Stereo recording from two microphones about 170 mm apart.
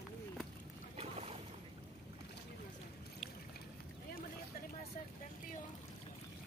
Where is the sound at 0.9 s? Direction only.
35° right (ahead or behind).